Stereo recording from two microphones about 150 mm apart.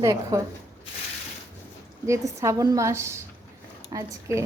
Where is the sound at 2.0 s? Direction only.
20° right (ahead or behind).